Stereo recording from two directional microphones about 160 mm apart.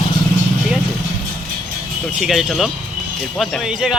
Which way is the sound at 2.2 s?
Centre (ahead or behind).